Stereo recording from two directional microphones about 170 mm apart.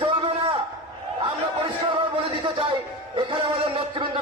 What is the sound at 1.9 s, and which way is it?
Music, 30° right (ahead or behind).